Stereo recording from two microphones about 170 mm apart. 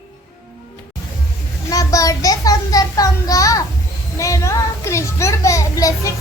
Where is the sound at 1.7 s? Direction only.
20° left (ahead or behind).